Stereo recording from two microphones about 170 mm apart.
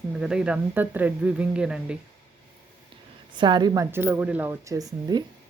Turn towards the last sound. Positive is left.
turn(degrees=-20)  # may be behind; listen again after turning